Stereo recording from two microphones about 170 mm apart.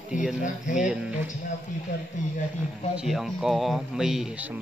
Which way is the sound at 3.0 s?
Centre (ahead or behind).